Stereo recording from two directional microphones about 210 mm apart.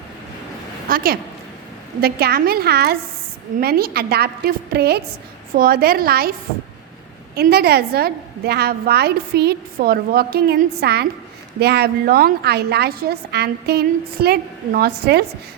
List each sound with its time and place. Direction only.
0.9 s a woman's voice: 45° right (ahead or behind)
7.3 s a woman's voice: 50° right (ahead or behind)